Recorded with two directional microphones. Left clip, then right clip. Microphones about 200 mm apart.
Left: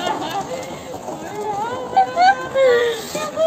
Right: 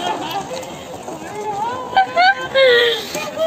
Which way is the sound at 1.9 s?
Centre (ahead or behind).